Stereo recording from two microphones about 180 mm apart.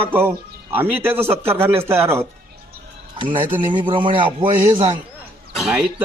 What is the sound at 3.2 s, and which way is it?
A man's voice, 25° right (ahead or behind).